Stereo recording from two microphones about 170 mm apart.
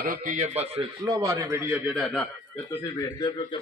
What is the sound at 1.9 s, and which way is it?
Speech, centre (ahead or behind).